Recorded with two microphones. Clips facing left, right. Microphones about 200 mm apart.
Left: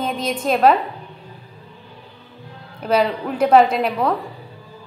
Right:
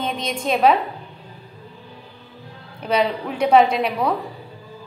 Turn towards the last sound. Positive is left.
turn(degrees=0)  # may be behind; listen again after turning